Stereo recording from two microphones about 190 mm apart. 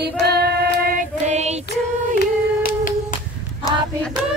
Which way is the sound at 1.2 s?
35° right (ahead or behind).